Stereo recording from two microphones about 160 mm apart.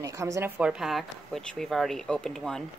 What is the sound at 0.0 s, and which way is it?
Speech, 20° right (ahead or behind).